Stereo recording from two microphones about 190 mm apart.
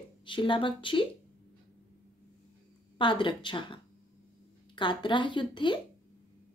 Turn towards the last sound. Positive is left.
turn(degrees=25)  # may be behind; listen again after turning